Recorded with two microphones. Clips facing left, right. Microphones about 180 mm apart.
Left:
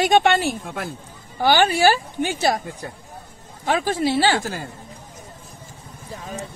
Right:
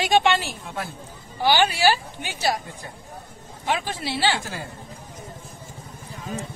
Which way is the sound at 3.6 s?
40° left (ahead or behind).